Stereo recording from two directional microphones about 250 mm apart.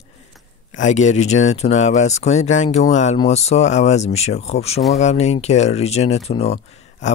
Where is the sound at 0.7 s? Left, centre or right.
Left.